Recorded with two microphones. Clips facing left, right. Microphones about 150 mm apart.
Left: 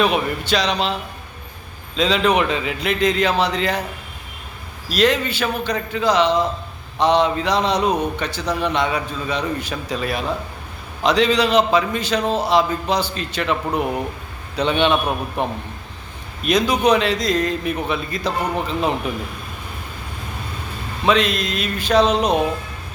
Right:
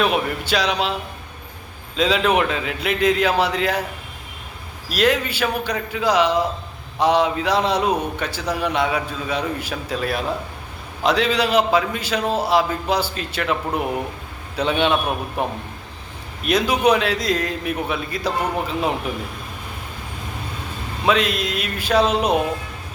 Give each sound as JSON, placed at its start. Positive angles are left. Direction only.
{"t": 0.0, "sound": "a man's voice", "side_deg": 0}
{"t": 2.0, "sound": "a man's voice", "side_deg": -5}
{"t": 4.9, "sound": "a man's voice", "side_deg": -5}
{"t": 21.0, "sound": "a man's voice", "side_deg": -5}